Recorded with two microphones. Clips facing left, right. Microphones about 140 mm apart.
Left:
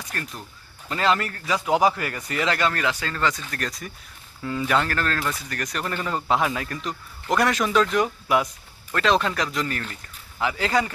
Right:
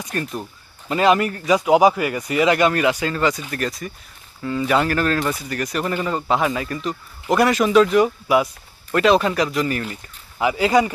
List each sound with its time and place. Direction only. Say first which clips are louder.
0.0 s speech: right 8 dB; 20° right (ahead or behind)